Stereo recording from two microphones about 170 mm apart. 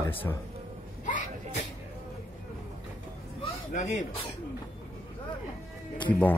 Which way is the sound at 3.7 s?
45° left (ahead or behind).